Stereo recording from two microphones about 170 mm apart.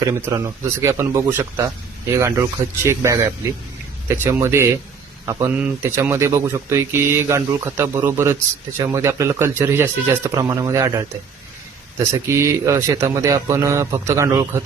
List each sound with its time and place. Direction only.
0.0 s speech: 20° right (ahead or behind)
12.1 s speech: 15° right (ahead or behind)